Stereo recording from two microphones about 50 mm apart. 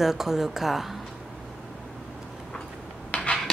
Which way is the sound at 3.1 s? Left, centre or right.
Left.